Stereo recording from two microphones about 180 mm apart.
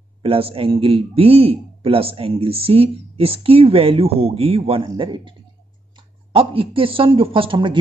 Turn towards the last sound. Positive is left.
turn(degrees=-30)  # may be behind; listen again after turning